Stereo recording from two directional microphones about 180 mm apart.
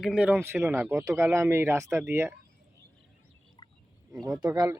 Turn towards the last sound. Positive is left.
turn(degrees=-20)  # may be behind; listen again after turning